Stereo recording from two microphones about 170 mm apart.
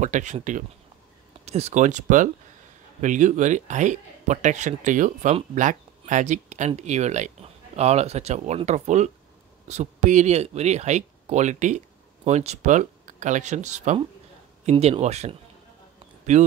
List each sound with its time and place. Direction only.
0.0 s speech: 45° right (ahead or behind)